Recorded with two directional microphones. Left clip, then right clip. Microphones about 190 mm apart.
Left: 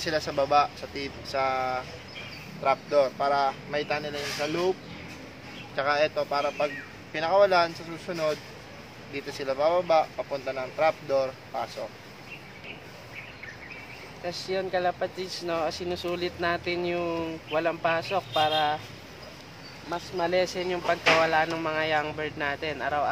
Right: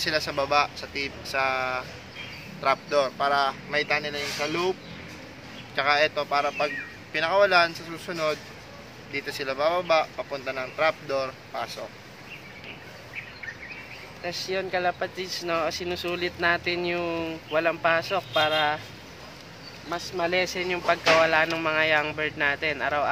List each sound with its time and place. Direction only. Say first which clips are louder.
0.0 s speech: right 1 dB; 20° left (ahead or behind)
5.8 s speech: right 2 dB; 20° left (ahead or behind)
14.2 s speech: right 1 dB; 10° right (ahead or behind)
19.9 s speech: right 1 dB; 10° right (ahead or behind)